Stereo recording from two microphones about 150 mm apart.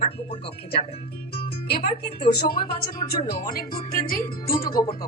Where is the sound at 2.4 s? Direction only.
75° left (ahead or behind).